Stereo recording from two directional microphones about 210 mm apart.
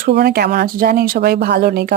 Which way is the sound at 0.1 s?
50° right (ahead or behind).